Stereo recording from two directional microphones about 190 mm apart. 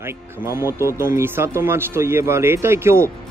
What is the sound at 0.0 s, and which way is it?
Speech, 15° right (ahead or behind).